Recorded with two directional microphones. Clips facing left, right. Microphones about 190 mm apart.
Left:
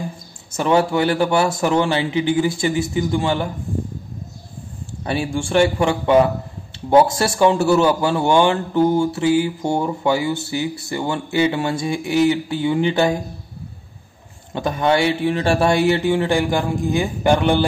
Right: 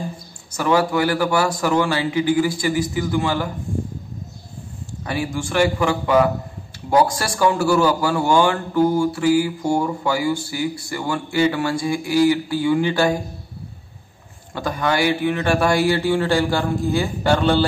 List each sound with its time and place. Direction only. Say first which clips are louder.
0.5 s a man's voice: left 1 dB; 25° left (ahead or behind)
5.0 s a man's voice: left 2 dB; 30° left (ahead or behind)
14.5 s a man's voice: left 4 dB; 20° left (ahead or behind)